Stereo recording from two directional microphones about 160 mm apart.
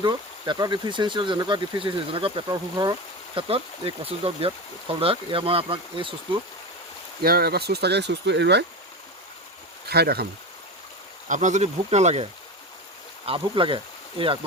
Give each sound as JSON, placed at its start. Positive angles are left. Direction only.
{"t": 0.0, "sound": "speech", "side_deg": -30}
{"t": 3.3, "sound": "speech", "side_deg": -35}
{"t": 7.2, "sound": "speech", "side_deg": -75}
{"t": 9.8, "sound": "speech", "side_deg": -85}
{"t": 11.3, "sound": "speech", "side_deg": -50}